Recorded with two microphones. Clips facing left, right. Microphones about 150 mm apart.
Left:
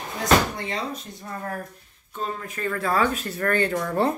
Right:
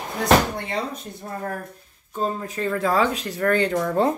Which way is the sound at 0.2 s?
60° right (ahead or behind).